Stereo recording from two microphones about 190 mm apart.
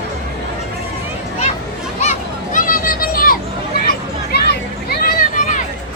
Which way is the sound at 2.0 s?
40° left (ahead or behind).